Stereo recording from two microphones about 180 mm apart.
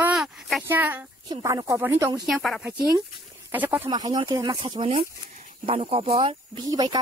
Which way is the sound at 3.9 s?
25° right (ahead or behind).